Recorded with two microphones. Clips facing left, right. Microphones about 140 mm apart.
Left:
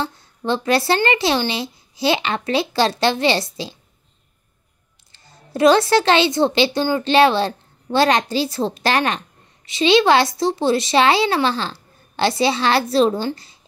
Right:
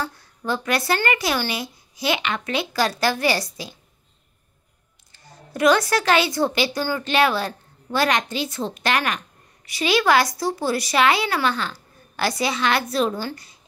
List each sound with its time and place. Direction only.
0.0 s a woman's voice: 25° left (ahead or behind)
5.1 s a woman's voice: 30° left (ahead or behind)